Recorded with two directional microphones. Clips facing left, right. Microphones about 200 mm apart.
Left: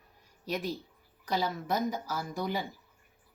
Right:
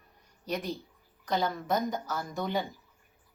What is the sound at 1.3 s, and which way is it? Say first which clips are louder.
A woman's voice: right 2 dB; 5° left (ahead or behind).